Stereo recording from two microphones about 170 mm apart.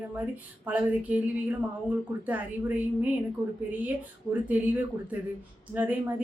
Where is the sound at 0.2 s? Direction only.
10° right (ahead or behind).